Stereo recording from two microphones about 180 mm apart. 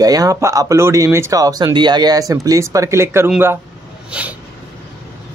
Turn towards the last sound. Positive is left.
turn(degrees=-5)  # may be behind; listen again after turning